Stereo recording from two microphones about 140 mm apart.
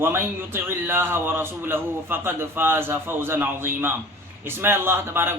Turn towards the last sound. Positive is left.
turn(degrees=-15)  # may be behind; listen again after turning